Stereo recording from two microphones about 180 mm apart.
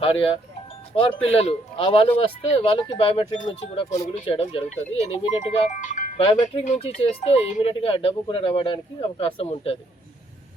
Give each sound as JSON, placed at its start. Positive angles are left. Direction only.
{"t": 0.0, "sound": "speech", "side_deg": 30}
{"t": 3.8, "sound": "speech", "side_deg": 20}
{"t": 4.1, "sound": "speech", "side_deg": 30}
{"t": 6.1, "sound": "speech", "side_deg": 30}